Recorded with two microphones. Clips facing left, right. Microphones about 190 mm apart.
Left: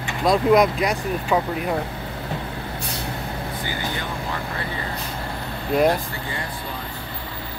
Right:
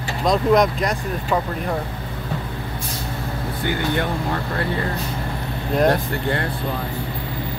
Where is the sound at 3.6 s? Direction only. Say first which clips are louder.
Right 10 dB; 60° right (ahead or behind).